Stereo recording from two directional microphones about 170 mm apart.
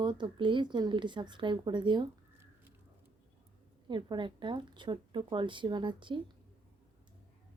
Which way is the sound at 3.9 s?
30° right (ahead or behind).